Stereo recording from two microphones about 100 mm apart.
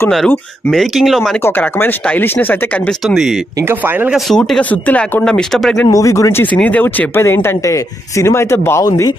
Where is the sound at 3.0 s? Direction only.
5° right (ahead or behind).